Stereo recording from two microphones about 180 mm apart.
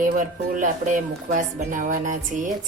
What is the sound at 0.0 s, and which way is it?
Music, 45° right (ahead or behind).